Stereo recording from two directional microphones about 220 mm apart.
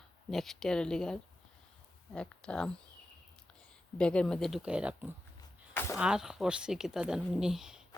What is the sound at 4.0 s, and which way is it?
Speech, 5° left (ahead or behind).